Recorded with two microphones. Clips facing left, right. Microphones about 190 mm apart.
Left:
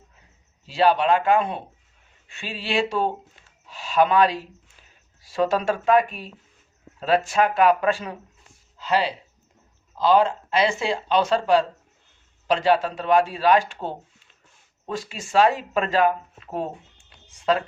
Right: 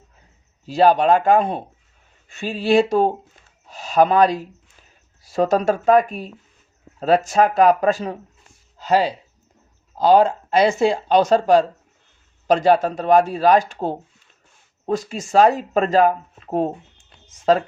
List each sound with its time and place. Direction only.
0.6 s speech: 45° right (ahead or behind)